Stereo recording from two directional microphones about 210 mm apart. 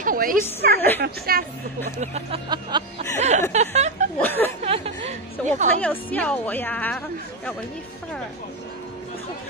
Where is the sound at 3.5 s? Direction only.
30° right (ahead or behind).